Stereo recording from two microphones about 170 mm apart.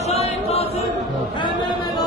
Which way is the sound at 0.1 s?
35° left (ahead or behind).